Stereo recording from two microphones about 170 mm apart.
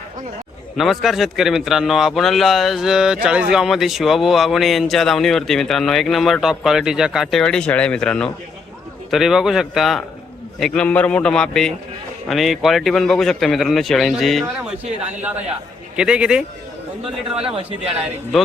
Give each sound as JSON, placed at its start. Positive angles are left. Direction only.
{"t": 0.8, "sound": "speech", "side_deg": 0}